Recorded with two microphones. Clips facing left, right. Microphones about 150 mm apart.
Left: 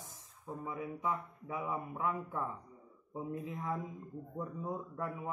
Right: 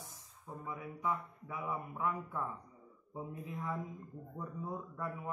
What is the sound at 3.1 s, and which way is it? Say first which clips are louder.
Speech: left 3 dB; 20° left (ahead or behind).